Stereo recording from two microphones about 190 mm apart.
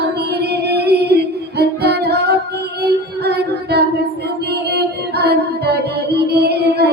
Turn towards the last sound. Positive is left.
turn(degrees=-60)  # may be behind; listen again after turning